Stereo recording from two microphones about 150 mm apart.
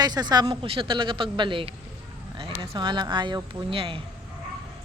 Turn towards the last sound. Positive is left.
turn(degrees=-35)  # may be behind; listen again after turning